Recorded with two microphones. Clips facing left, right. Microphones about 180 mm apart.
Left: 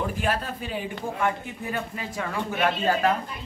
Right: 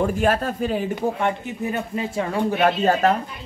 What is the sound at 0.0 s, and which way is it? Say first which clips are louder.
Speech: right 7 dB; 45° right (ahead or behind).